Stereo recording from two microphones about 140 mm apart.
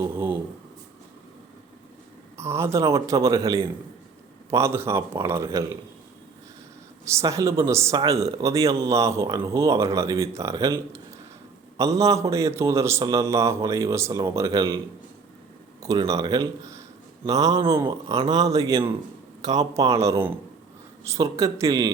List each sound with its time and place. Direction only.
0.0 s speech: 15° right (ahead or behind)
2.4 s a man's voice: 20° right (ahead or behind)
7.0 s a man's voice: 20° right (ahead or behind)
15.8 s a man's voice: 25° right (ahead or behind)